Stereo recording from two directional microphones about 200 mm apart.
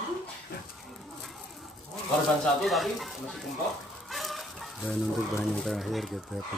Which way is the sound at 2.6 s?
Centre (ahead or behind).